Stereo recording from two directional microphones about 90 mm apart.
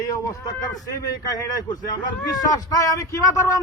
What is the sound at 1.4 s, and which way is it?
Speech, 45° left (ahead or behind).